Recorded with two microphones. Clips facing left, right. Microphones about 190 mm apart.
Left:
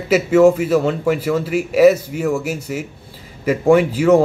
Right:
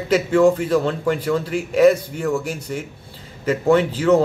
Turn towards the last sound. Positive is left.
turn(degrees=10)  # may be behind; listen again after turning